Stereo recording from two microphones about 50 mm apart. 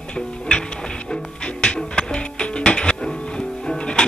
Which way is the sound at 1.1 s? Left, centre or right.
Centre.